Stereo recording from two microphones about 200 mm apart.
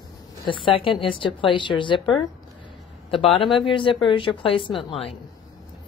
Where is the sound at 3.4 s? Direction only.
Centre (ahead or behind).